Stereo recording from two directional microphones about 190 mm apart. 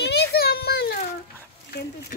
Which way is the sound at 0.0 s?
60° left (ahead or behind).